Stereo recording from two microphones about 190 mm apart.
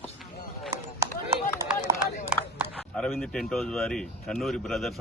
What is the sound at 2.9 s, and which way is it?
Speech, 5° left (ahead or behind).